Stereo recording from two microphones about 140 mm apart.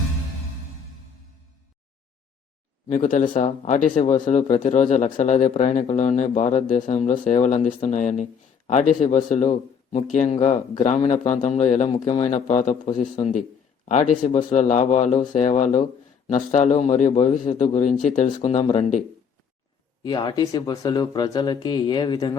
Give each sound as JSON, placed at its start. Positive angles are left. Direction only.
{"t": 2.9, "sound": "speech", "side_deg": 60}
{"t": 20.0, "sound": "speech", "side_deg": 30}